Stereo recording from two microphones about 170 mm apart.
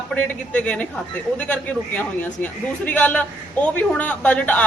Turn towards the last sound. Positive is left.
turn(degrees=10)  # may be behind; listen again after turning